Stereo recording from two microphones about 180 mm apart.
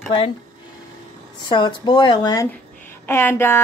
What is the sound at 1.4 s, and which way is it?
A woman's voice, 25° left (ahead or behind).